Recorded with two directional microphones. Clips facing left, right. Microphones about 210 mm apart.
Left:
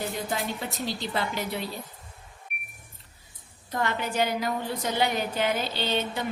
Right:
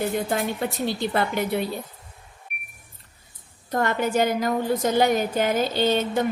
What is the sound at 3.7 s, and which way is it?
A woman's voice, 50° right (ahead or behind).